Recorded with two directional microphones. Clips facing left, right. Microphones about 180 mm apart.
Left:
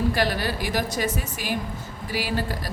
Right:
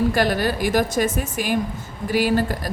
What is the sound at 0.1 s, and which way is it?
Speech, 50° right (ahead or behind).